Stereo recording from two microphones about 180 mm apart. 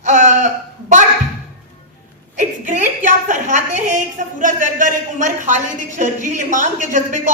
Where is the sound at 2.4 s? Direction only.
45° right (ahead or behind).